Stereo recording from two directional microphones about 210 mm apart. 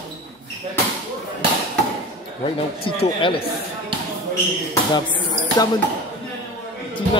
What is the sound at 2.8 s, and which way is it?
Speech, 25° left (ahead or behind).